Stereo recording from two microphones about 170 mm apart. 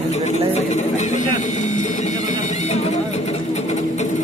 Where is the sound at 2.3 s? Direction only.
45° left (ahead or behind).